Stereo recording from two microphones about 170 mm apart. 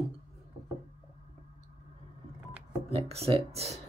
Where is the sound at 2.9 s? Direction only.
35° right (ahead or behind).